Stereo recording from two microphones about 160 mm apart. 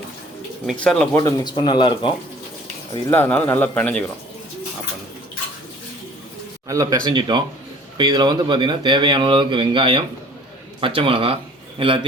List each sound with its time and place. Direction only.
0.8 s speech: 5° left (ahead or behind)
1.1 s speech: 25° left (ahead or behind)
3.1 s a man's voice: 10° left (ahead or behind)
6.7 s a man's voice: 25° right (ahead or behind)